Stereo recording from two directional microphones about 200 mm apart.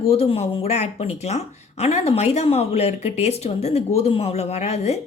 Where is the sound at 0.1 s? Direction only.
30° left (ahead or behind).